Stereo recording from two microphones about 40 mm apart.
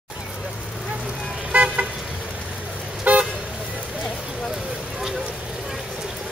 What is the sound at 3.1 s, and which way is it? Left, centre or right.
Vehicle, right.